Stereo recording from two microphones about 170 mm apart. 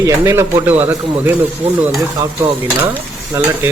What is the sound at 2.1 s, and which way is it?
Speech, 15° right (ahead or behind).